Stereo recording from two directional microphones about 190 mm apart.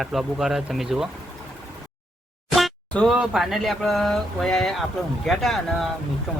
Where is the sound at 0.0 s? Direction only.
Centre (ahead or behind).